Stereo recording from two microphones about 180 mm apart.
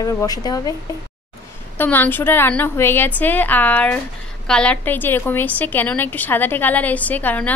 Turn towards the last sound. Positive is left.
turn(degrees=10)  # may be behind; listen again after turning